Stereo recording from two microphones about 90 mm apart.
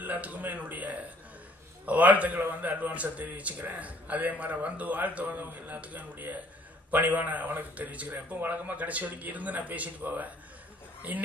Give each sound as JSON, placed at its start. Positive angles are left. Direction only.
{"t": 0.0, "sound": "a man's voice", "side_deg": -20}